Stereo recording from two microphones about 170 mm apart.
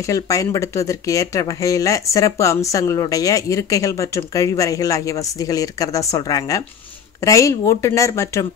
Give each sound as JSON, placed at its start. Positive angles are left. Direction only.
{"t": 0.0, "sound": "speech", "side_deg": 20}